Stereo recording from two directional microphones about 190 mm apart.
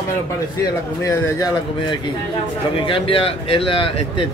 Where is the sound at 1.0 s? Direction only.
15° left (ahead or behind).